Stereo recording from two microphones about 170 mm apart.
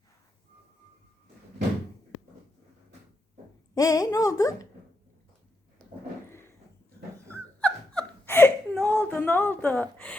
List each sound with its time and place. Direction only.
3.8 s speech: 20° left (ahead or behind)
7.3 s whimper: 10° left (ahead or behind)
9.0 s a woman's voice: 10° left (ahead or behind)